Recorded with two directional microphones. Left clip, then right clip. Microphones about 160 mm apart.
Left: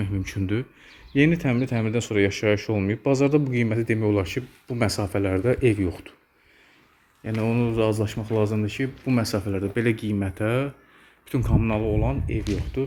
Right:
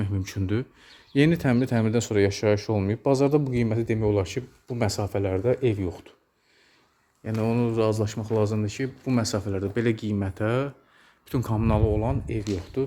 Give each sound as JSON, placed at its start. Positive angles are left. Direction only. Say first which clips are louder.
{"t": 0.0, "sound": "speech", "louder": "left 2 dB", "side_deg": -10}
{"t": 1.1, "sound": "speech", "louder": "left 1 dB", "side_deg": -25}
{"t": 7.3, "sound": "speech", "louder": "left 1 dB", "side_deg": -5}